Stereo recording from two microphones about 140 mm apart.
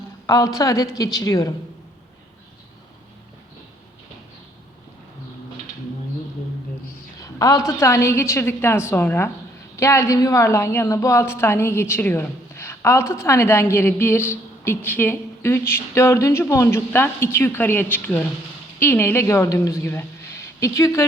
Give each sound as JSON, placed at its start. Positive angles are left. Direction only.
{"t": 0.3, "sound": "a woman's voice", "side_deg": 25}
{"t": 7.2, "sound": "a woman's voice", "side_deg": 25}